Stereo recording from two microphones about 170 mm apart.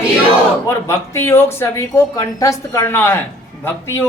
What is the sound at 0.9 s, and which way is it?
A woman's voice, 15° left (ahead or behind).